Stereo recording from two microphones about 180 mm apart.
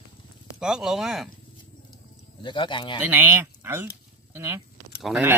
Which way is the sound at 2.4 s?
25° left (ahead or behind).